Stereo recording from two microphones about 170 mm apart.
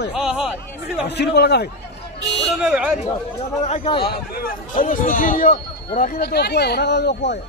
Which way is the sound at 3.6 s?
40° left (ahead or behind).